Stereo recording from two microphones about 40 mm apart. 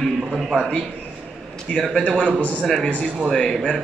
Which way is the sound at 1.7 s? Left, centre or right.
Left.